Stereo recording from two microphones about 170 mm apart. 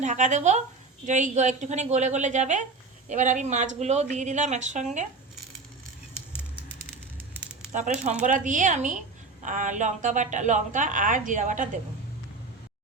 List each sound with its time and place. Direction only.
0.0 s a woman's voice: 45° right (ahead or behind)
7.7 s a woman's voice: 45° right (ahead or behind)